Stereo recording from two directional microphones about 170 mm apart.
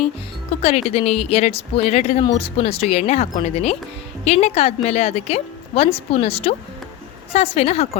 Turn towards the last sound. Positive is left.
turn(degrees=35)  # may be behind; listen again after turning